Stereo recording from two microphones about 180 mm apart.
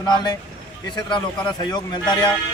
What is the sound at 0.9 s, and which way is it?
Speech, 25° left (ahead or behind).